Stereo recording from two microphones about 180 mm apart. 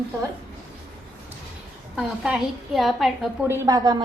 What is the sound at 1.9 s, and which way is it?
A woman's voice, 5° right (ahead or behind).